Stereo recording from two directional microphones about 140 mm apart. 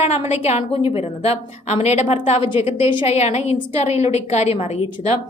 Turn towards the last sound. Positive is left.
turn(degrees=45)  # may be behind; listen again after turning